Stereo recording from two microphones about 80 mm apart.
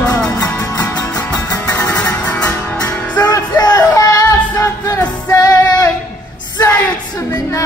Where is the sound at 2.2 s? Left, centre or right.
Centre.